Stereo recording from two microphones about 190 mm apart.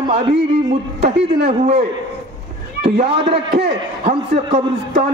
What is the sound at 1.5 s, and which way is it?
Speech, 35° right (ahead or behind).